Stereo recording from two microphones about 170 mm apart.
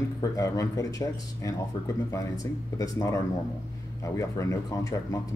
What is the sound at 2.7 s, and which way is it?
Speech, 20° left (ahead or behind).